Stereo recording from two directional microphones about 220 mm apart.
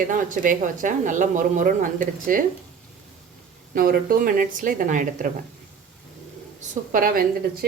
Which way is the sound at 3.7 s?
40° right (ahead or behind).